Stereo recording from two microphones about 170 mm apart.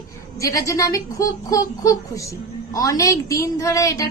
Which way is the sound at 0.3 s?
20° left (ahead or behind).